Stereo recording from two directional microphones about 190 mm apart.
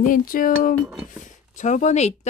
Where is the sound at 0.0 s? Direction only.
45° left (ahead or behind).